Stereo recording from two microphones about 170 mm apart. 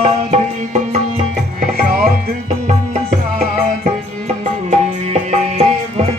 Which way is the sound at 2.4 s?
40° right (ahead or behind).